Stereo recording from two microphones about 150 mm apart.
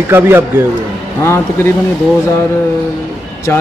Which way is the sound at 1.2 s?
15° left (ahead or behind).